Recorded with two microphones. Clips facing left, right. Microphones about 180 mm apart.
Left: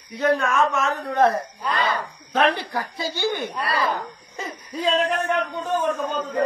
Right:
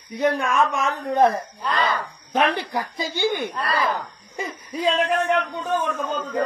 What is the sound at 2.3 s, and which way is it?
A woman's voice, 15° right (ahead or behind).